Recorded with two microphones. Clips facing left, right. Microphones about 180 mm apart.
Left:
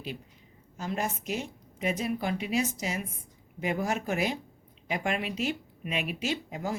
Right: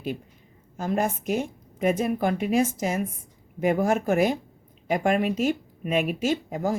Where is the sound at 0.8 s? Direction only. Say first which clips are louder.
Right 7 dB; 50° right (ahead or behind).